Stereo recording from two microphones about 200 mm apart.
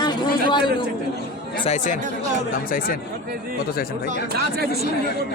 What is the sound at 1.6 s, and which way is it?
Speech, 35° left (ahead or behind).